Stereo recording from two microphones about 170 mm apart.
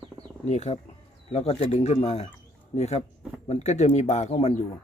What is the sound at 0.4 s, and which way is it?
Speech, 40° left (ahead or behind).